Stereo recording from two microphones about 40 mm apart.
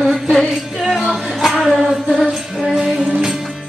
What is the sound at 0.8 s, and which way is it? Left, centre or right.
Music, centre.